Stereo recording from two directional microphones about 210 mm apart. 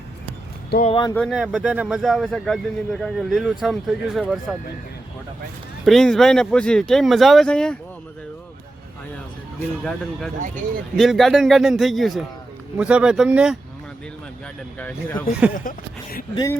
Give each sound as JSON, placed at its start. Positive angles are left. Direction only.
{"t": 0.9, "sound": "speech", "side_deg": 25}
{"t": 1.1, "sound": "speech", "side_deg": 0}
{"t": 5.8, "sound": "speech", "side_deg": 0}
{"t": 10.5, "sound": "speech", "side_deg": 0}
{"t": 14.8, "sound": "speech", "side_deg": 5}
{"t": 16.3, "sound": "speech", "side_deg": 15}